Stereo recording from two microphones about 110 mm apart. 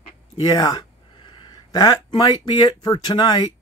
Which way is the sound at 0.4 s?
35° left (ahead or behind).